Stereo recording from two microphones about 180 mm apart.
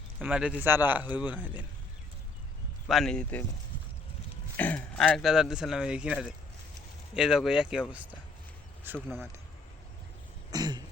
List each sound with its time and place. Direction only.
0.2 s a man's voice: 5° right (ahead or behind)
2.8 s speech: 5° left (ahead or behind)
4.5 s speech: 10° left (ahead or behind)
7.2 s speech: 5° right (ahead or behind)
9.0 s speech: 5° left (ahead or behind)
10.5 s throat clearing: 20° right (ahead or behind)